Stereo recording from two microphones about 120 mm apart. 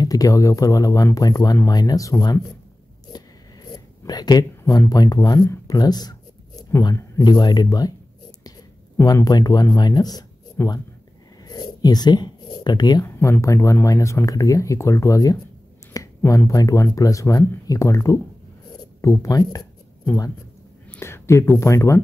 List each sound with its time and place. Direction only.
0.0 s speech: 30° left (ahead or behind)
3.7 s speech: 35° left (ahead or behind)
11.4 s a sound: 35° left (ahead or behind)
13.0 s speech: 25° left (ahead or behind)
20.9 s speech: 20° left (ahead or behind)